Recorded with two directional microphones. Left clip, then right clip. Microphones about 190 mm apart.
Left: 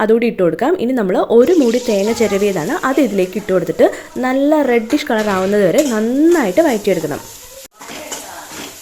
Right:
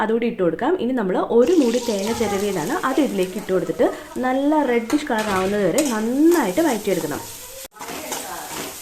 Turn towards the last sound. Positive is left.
turn(degrees=35)  # may be behind; listen again after turning